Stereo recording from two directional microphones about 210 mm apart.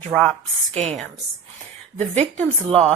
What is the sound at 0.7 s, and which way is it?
Speech, 35° right (ahead or behind).